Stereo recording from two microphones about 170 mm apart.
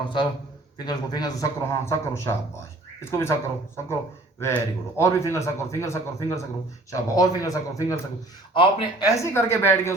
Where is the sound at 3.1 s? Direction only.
15° left (ahead or behind).